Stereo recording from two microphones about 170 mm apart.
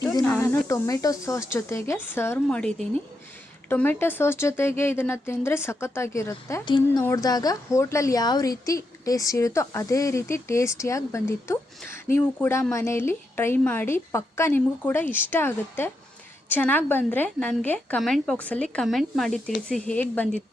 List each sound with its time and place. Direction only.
0.0 s snake: 20° left (ahead or behind)
0.3 s a woman's voice: 15° left (ahead or behind)